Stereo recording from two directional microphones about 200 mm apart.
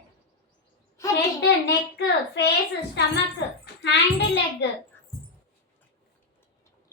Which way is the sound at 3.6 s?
55° left (ahead or behind).